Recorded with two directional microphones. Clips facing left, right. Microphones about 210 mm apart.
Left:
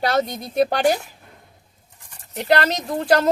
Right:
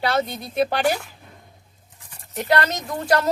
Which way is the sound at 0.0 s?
45° left (ahead or behind).